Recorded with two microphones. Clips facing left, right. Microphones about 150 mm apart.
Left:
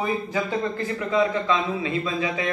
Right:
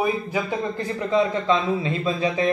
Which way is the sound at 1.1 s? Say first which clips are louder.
Right 2 dB; 30° right (ahead or behind).